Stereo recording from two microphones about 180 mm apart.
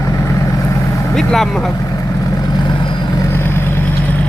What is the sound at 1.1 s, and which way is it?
Speech, centre (ahead or behind).